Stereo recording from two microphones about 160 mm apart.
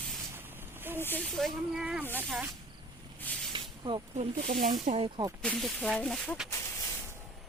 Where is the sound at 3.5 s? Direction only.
30° right (ahead or behind).